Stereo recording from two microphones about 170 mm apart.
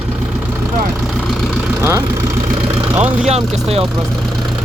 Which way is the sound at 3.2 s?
40° right (ahead or behind).